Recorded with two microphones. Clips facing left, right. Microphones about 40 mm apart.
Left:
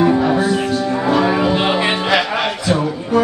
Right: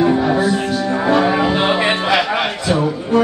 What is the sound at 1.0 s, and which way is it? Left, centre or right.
Music, centre.